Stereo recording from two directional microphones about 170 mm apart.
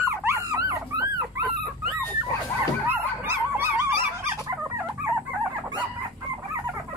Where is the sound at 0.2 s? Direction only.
20° right (ahead or behind).